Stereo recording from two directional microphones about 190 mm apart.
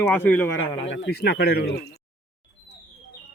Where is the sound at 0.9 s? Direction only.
65° left (ahead or behind).